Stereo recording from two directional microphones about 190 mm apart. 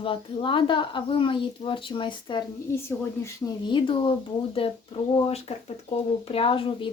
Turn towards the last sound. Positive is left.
turn(degrees=25)  # may be behind; listen again after turning